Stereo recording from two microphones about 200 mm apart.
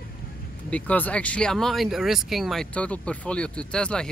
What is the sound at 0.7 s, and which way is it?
Speech, 5° left (ahead or behind).